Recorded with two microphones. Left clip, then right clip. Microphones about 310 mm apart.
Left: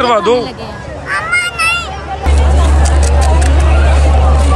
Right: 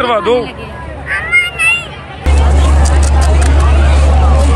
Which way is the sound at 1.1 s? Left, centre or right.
Left.